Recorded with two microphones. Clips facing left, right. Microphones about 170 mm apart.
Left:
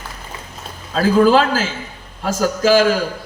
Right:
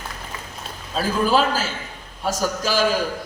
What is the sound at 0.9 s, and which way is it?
A man's voice, 90° left.